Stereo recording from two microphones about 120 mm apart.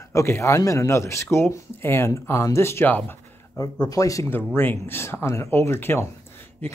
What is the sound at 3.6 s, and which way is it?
Speech, 30° left (ahead or behind).